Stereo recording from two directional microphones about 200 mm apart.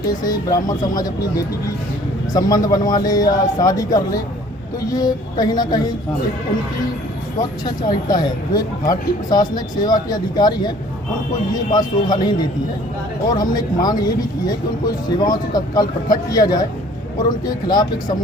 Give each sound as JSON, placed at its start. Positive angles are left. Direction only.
{"t": 0.3, "sound": "speech", "side_deg": 20}
{"t": 2.3, "sound": "speech", "side_deg": 20}
{"t": 4.9, "sound": "speech", "side_deg": 20}
{"t": 7.9, "sound": "speech", "side_deg": 20}